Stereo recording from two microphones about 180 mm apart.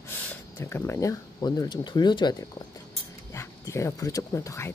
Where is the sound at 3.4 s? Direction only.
15° left (ahead or behind).